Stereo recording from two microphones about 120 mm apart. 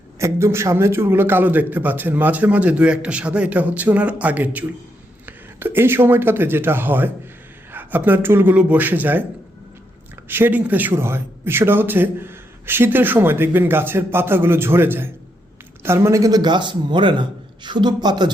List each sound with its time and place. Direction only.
0.2 s a man's voice: 20° right (ahead or behind)
10.2 s a man's voice: 15° right (ahead or behind); by 18.3 s 35° right (ahead or behind)